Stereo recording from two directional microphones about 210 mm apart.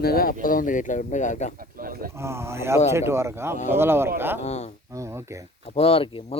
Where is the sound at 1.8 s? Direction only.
45° right (ahead or behind).